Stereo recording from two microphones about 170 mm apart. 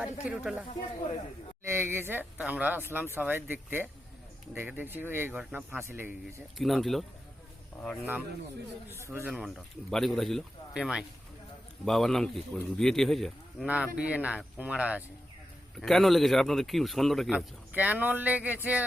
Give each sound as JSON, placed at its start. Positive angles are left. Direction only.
{"t": 0.0, "sound": "speech", "side_deg": -5}
{"t": 1.6, "sound": "speech", "side_deg": -15}
{"t": 6.6, "sound": "speech", "side_deg": 0}
{"t": 9.0, "sound": "speech", "side_deg": -15}
{"t": 9.9, "sound": "speech", "side_deg": 0}